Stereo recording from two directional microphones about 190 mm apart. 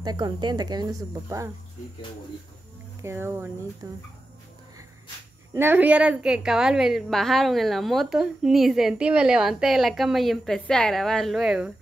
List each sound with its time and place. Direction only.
0.0 s speech: 20° right (ahead or behind)
3.0 s speech: 15° right (ahead or behind)
5.5 s a woman's voice: 10° right (ahead or behind)